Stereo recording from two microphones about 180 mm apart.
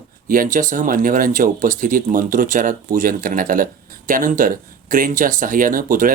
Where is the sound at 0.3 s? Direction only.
50° right (ahead or behind).